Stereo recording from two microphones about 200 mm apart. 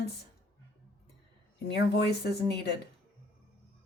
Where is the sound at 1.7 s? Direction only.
55° left (ahead or behind).